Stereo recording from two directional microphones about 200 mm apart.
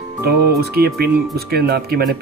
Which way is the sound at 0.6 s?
50° right (ahead or behind).